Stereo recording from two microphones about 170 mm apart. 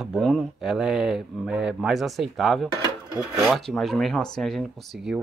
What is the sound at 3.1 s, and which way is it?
Filing, 20° right (ahead or behind).